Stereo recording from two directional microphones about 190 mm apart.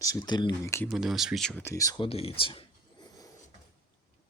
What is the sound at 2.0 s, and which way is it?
Speech, 30° left (ahead or behind).